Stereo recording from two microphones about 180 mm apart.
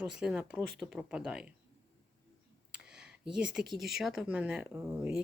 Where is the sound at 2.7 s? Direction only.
5° right (ahead or behind).